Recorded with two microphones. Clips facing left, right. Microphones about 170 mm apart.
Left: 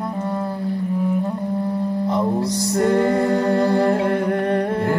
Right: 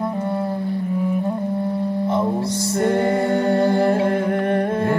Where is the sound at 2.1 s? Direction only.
35° left (ahead or behind).